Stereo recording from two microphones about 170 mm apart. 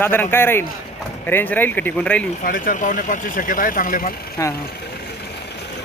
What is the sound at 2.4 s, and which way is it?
Speech, 55° left (ahead or behind).